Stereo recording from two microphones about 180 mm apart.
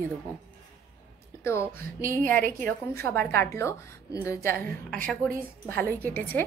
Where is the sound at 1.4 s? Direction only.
15° left (ahead or behind).